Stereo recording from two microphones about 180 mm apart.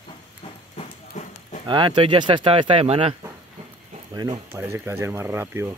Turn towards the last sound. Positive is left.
turn(degrees=-15)  # may be behind; listen again after turning